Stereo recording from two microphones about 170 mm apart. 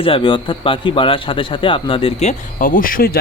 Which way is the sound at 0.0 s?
30° left (ahead or behind).